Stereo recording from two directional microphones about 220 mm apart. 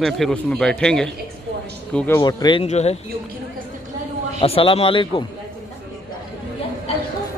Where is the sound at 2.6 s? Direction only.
30° left (ahead or behind).